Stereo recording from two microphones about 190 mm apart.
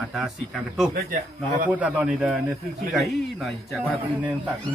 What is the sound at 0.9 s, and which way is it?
Speech, 50° right (ahead or behind).